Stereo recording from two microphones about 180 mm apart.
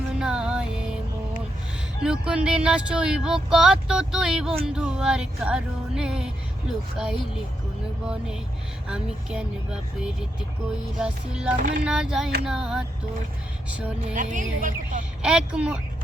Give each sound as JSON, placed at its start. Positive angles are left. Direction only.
{"t": 0.1, "sound": "music", "side_deg": -5}
{"t": 2.0, "sound": "music", "side_deg": -5}
{"t": 10.9, "sound": "music", "side_deg": -5}
{"t": 14.2, "sound": "a woman's voice", "side_deg": -45}
{"t": 15.2, "sound": "music", "side_deg": -5}